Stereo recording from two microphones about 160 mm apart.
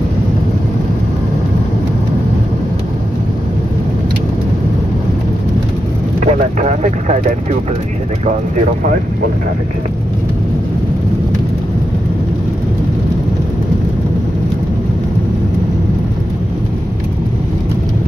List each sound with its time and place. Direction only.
6.2 s speech: 50° right (ahead or behind)